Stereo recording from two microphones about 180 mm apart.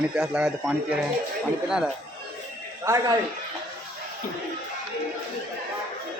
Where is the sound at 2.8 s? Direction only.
15° right (ahead or behind).